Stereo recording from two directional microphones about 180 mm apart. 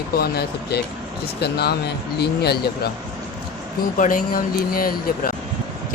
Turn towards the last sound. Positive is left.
turn(degrees=55)  # may be behind; listen again after turning